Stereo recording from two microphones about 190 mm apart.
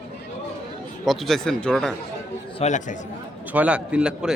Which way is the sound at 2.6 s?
40° left (ahead or behind).